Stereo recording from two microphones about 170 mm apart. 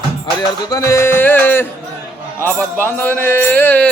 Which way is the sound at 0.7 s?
20° left (ahead or behind).